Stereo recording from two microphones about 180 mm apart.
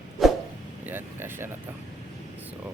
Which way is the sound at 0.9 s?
10° right (ahead or behind).